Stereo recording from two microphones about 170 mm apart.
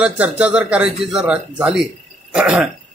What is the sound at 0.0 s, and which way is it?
A man's voice, 5° right (ahead or behind).